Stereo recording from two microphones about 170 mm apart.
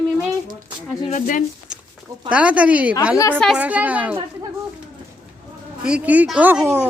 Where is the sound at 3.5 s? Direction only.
10° right (ahead or behind).